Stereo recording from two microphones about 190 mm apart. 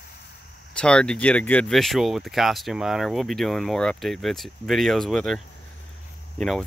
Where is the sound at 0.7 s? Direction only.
5° left (ahead or behind).